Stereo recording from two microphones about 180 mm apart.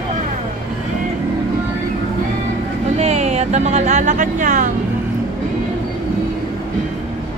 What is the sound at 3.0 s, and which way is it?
Music, 35° right (ahead or behind).